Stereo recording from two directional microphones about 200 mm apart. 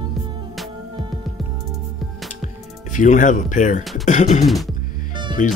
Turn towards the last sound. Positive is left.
turn(degrees=40)  # may be behind; listen again after turning